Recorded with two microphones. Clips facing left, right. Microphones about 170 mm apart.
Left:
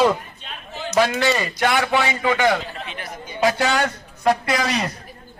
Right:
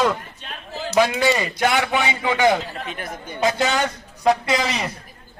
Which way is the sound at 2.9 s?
45° right (ahead or behind).